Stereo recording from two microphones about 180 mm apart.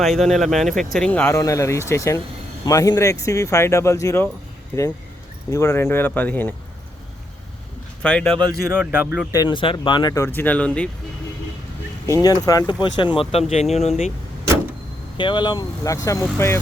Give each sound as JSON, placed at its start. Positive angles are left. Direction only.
{"t": 0.0, "sound": "speech", "side_deg": 0}
{"t": 8.0, "sound": "speech", "side_deg": 5}
{"t": 8.7, "sound": "speech", "side_deg": -10}
{"t": 9.4, "sound": "speech", "side_deg": 25}
{"t": 10.2, "sound": "speech", "side_deg": 10}
{"t": 12.0, "sound": "speech", "side_deg": 20}
{"t": 13.5, "sound": "speech", "side_deg": 40}
{"t": 15.2, "sound": "speech", "side_deg": 25}